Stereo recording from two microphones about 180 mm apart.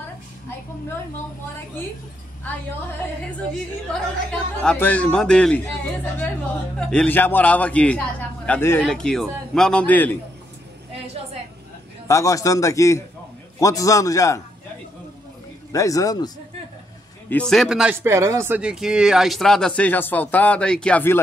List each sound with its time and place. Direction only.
3.9 s speech: 5° left (ahead or behind)
6.8 s a man's voice: 5° left (ahead or behind)
12.1 s a man's voice: 15° left (ahead or behind)
15.7 s speech: 20° left (ahead or behind)
17.3 s speech: 5° left (ahead or behind)
18.0 s speech: 15° right (ahead or behind); by 21.2 s 10° left (ahead or behind)